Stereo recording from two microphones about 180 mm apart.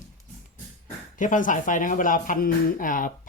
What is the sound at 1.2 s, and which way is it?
Speech, 45° left (ahead or behind).